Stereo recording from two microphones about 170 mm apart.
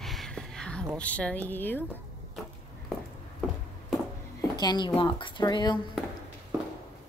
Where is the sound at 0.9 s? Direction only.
5° left (ahead or behind).